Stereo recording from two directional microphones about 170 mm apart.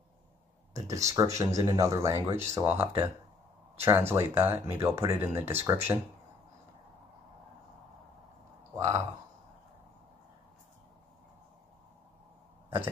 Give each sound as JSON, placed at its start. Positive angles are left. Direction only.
{"t": 0.7, "sound": "speech", "side_deg": -20}
{"t": 8.7, "sound": "speech", "side_deg": -20}
{"t": 12.6, "sound": "a sound", "side_deg": -10}